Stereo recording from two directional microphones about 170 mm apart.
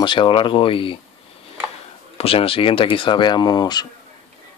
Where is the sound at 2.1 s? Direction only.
35° left (ahead or behind).